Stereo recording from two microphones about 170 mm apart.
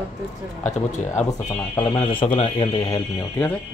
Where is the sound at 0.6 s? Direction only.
45° left (ahead or behind).